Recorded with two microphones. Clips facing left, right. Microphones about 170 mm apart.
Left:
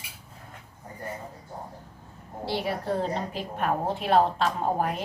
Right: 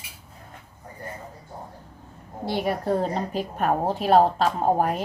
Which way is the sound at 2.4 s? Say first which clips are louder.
Right 4 dB; 50° right (ahead or behind).